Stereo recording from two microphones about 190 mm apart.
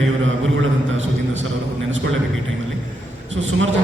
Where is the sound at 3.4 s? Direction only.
90° right.